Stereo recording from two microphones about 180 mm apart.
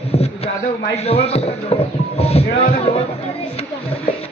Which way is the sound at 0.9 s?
35° left (ahead or behind).